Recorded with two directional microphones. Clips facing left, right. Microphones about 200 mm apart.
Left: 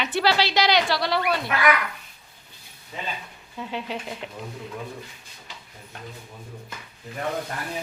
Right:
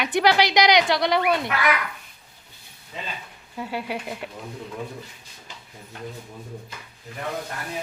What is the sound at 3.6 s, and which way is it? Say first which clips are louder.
Speech: right 2 dB; 10° right (ahead or behind).